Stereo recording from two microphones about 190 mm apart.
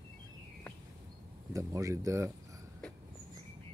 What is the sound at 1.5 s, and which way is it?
Speech, 15° right (ahead or behind).